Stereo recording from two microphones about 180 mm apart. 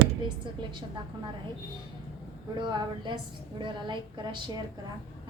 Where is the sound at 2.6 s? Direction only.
25° right (ahead or behind).